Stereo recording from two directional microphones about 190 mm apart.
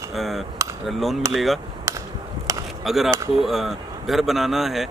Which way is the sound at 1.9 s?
15° right (ahead or behind).